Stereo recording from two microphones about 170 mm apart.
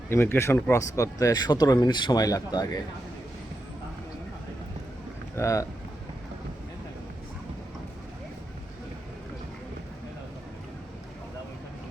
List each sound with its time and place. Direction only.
0.1 s speech: 15° left (ahead or behind)
5.4 s speech: 20° left (ahead or behind)